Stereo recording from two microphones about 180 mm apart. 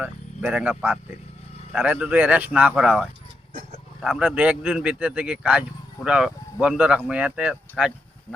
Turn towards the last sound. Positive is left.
turn(degrees=-5)  # may be behind; listen again after turning